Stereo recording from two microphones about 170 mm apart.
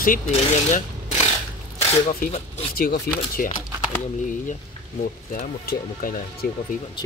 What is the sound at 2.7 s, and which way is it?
Speech, 60° left (ahead or behind).